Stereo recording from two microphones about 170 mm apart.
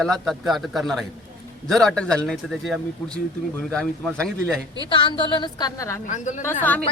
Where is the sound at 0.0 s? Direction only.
Centre (ahead or behind).